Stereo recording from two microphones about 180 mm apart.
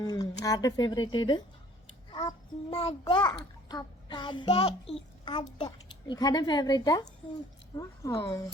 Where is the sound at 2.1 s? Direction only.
30° left (ahead or behind).